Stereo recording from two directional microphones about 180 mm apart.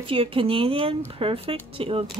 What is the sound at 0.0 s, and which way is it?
Speech, 30° right (ahead or behind).